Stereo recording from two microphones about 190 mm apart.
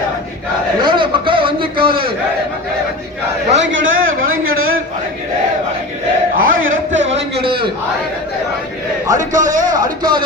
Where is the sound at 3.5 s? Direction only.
75° right (ahead or behind).